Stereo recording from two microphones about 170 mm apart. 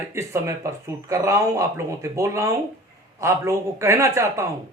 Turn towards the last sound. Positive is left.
turn(degrees=-15)  # may be behind; listen again after turning